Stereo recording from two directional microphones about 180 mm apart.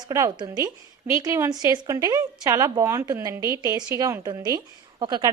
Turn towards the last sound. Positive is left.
turn(degrees=-25)  # may be behind; listen again after turning